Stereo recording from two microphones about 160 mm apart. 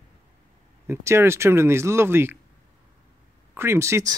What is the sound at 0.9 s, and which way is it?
Speech, 15° right (ahead or behind).